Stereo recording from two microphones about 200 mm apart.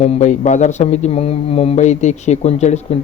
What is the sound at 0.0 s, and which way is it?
A man's voice, 35° left (ahead or behind).